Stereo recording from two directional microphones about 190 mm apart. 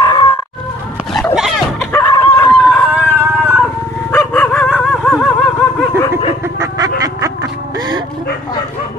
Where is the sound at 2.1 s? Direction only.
20° left (ahead or behind).